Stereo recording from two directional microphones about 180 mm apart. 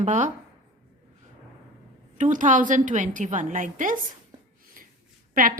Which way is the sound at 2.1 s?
45° right (ahead or behind).